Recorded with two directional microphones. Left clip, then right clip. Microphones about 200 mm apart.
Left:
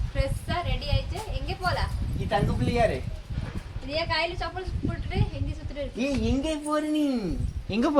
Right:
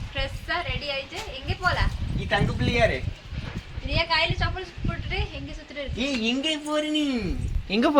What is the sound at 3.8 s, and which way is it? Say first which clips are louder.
A woman's voice: right 3 dB; 10° right (ahead or behind).